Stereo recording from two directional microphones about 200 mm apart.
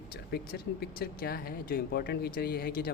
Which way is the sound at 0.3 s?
50° left (ahead or behind).